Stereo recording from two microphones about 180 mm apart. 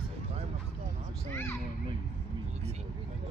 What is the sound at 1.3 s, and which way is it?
Speech, 15° left (ahead or behind).